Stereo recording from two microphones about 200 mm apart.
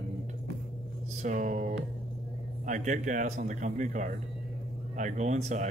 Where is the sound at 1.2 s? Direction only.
40° right (ahead or behind).